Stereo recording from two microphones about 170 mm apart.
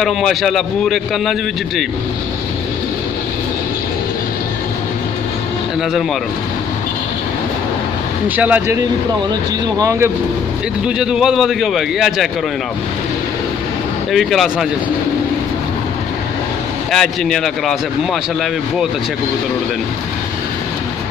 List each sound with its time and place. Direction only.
0.0 s a man's voice: centre (ahead or behind)
8.4 s speech: 10° right (ahead or behind)
11.0 s a man's voice: 5° right (ahead or behind)
14.1 s a man's voice: centre (ahead or behind)
16.9 s a man's voice: centre (ahead or behind)